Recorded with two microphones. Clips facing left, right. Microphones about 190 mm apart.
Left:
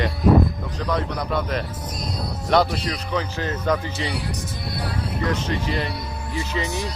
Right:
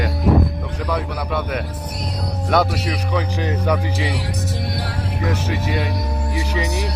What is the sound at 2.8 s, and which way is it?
Speech, 10° right (ahead or behind).